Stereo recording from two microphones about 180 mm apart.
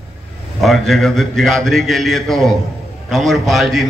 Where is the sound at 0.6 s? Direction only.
Centre (ahead or behind).